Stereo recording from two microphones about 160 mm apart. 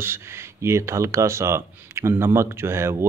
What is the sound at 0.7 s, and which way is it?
Speech, 15° right (ahead or behind).